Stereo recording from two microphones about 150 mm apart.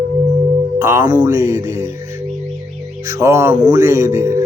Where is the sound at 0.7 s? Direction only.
15° right (ahead or behind).